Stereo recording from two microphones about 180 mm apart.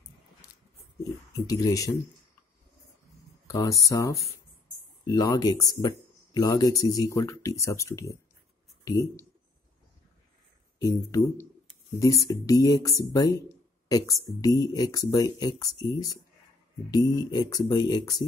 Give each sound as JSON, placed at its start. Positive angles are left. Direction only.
{"t": 0.4, "sound": "a sound", "side_deg": 20}
{"t": 1.3, "sound": "speech", "side_deg": 20}
{"t": 3.4, "sound": "speech", "side_deg": 20}
{"t": 10.8, "sound": "speech", "side_deg": 20}
{"t": 16.9, "sound": "speech", "side_deg": 20}